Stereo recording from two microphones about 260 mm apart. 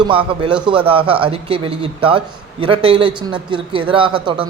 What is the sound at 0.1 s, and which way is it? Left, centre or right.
Speech, right.